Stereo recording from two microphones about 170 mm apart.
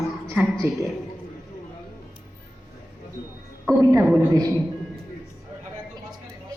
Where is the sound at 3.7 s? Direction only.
15° right (ahead or behind).